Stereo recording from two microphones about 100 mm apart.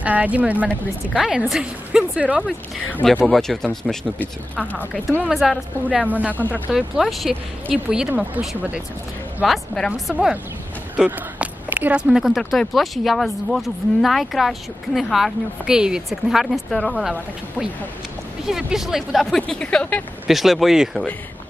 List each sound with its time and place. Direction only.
0.0 s speech: 15° right (ahead or behind)
2.4 s speech: 10° left (ahead or behind)
4.7 s speech: 15° left (ahead or behind)
5.3 s speech: centre (ahead or behind)
5.9 s speech: 15° right (ahead or behind)
6.3 s speech: 15° left (ahead or behind)
6.7 s speech: centre (ahead or behind)
9.4 s speech: centre (ahead or behind)
10.1 s speech: 15° right (ahead or behind)
11.1 s a sound: 15° right (ahead or behind)
12.1 s speech: centre (ahead or behind)
18.4 s speech: 5° right (ahead or behind)
20.2 s speech: centre (ahead or behind)